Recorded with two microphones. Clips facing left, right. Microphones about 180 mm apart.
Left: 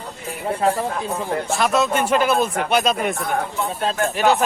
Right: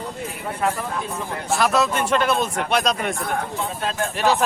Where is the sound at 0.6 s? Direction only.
30° left (ahead or behind).